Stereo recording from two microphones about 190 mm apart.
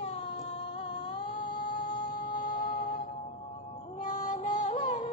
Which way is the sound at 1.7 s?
25° left (ahead or behind).